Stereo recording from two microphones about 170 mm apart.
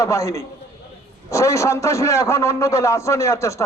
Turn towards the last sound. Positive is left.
turn(degrees=15)  # may be behind; listen again after turning